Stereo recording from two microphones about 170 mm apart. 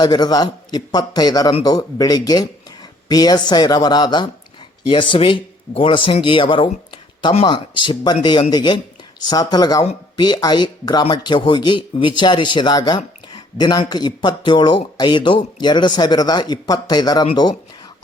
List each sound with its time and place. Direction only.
0.0 s speech: 25° left (ahead or behind)